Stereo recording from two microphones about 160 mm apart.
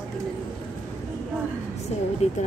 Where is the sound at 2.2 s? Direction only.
45° left (ahead or behind).